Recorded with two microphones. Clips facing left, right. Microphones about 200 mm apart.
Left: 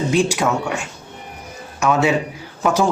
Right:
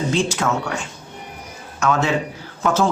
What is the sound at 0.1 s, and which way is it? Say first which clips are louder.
Speech: left 5 dB; 15° left (ahead or behind).